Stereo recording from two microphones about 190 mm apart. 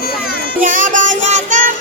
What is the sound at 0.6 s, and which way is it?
Music, 45° right (ahead or behind).